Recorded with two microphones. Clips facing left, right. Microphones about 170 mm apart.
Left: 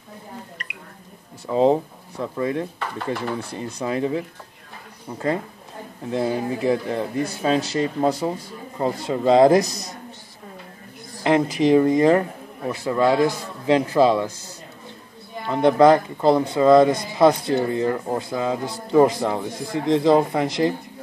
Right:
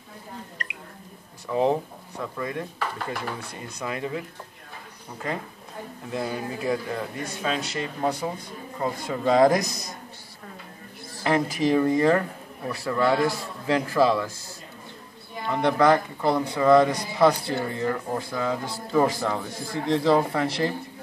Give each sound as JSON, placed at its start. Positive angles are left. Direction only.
{"t": 1.5, "sound": "speech", "side_deg": 25}
{"t": 6.1, "sound": "speech", "side_deg": 25}
{"t": 11.1, "sound": "speech", "side_deg": 20}
{"t": 15.4, "sound": "speech", "side_deg": 20}